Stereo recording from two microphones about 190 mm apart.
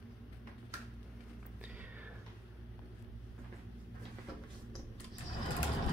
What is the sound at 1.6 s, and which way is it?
Music, 10° right (ahead or behind).